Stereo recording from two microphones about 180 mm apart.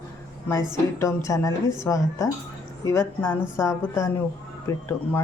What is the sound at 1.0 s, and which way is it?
A woman's voice, 15° left (ahead or behind).